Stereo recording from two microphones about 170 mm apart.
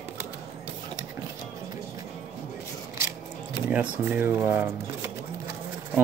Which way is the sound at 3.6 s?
10° right (ahead or behind).